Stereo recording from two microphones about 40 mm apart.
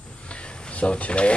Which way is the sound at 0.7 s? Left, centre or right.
Left.